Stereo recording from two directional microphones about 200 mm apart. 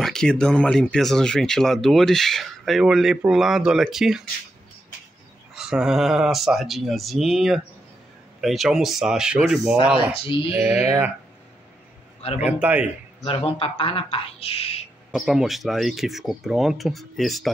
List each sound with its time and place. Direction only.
0.0 s speech: 5° left (ahead or behind)
5.5 s speech: centre (ahead or behind)
9.9 s speech: 25° left (ahead or behind)
12.2 s a man's voice: 30° left (ahead or behind)
12.4 s a man's voice: 5° right (ahead or behind)
13.2 s speech: 30° left (ahead or behind)
15.0 s speech: centre (ahead or behind)